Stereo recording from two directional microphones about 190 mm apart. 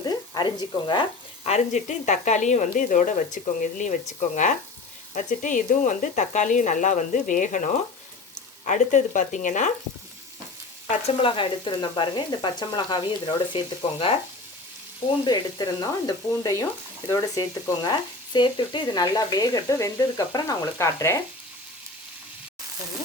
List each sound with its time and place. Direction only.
0.0 s a sound: 20° left (ahead or behind)
1.5 s speech: 35° left (ahead or behind)
10.8 s frying: 30° left (ahead or behind)
15.2 s frying: 25° left (ahead or behind)